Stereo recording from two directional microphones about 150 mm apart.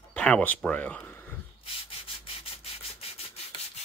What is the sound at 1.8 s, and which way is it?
Rub, 35° left (ahead or behind).